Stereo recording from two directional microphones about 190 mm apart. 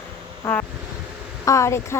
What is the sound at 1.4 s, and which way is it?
Speech, 15° left (ahead or behind).